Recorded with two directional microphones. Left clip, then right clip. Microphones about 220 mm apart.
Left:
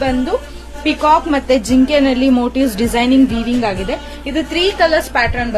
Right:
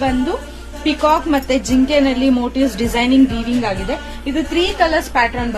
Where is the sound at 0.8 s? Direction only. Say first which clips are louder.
Left 2 dB; 50° left (ahead or behind).